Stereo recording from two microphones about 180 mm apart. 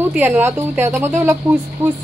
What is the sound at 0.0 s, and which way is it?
A woman's voice, 10° right (ahead or behind).